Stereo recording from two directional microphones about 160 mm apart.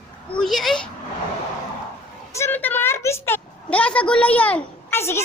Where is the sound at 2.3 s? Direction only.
15° left (ahead or behind).